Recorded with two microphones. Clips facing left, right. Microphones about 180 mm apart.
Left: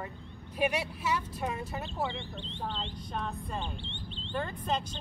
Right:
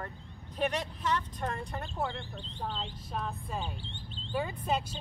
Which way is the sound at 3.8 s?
40° right (ahead or behind).